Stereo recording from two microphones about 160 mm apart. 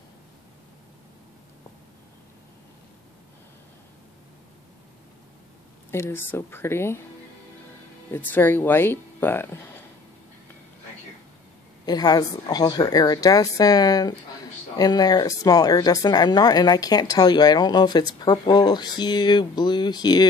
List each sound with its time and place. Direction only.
5.9 s speech: 15° left (ahead or behind)
8.1 s speech: 10° left (ahead or behind)
11.8 s speech: 25° left (ahead or behind)